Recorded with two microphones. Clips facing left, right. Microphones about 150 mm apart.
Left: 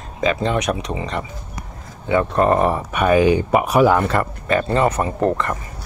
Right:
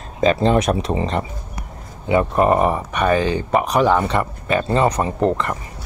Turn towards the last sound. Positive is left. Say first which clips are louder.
# even
turn(degrees=-20)  # may be behind; listen again after turning